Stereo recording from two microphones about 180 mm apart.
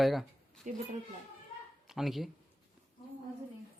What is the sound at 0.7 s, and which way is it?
Speech, 45° right (ahead or behind).